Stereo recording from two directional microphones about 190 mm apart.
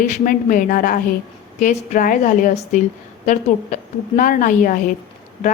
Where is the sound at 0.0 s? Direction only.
45° left (ahead or behind).